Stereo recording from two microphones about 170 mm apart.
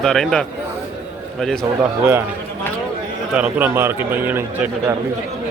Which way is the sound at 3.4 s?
10° right (ahead or behind).